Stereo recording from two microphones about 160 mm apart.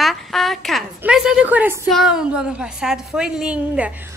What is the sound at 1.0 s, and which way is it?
A woman's voice, 5° right (ahead or behind).